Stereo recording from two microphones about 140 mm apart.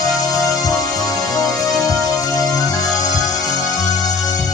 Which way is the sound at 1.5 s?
Centre (ahead or behind).